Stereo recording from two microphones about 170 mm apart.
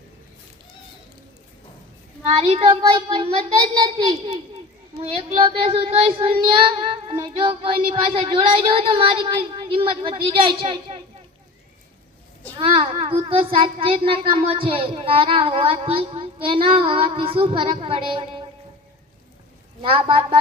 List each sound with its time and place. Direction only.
2.3 s a child's voice: 35° right (ahead or behind)
12.5 s speech: 30° right (ahead or behind)
19.8 s speech: 30° right (ahead or behind)